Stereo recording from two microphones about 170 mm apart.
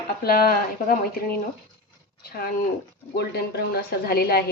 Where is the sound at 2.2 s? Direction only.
65° left (ahead or behind).